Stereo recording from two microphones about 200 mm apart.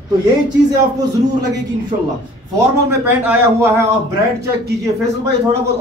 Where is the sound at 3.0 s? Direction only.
10° right (ahead or behind).